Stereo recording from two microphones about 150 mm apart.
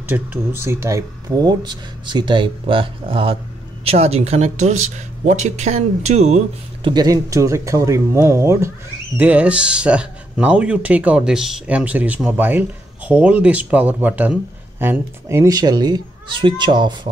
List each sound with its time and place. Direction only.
0.0 s speech: 15° right (ahead or behind); by 6.9 s 45° right (ahead or behind)
6.9 s speech: 25° right (ahead or behind)